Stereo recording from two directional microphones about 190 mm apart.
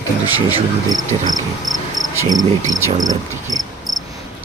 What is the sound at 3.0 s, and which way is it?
Speech, 20° right (ahead or behind).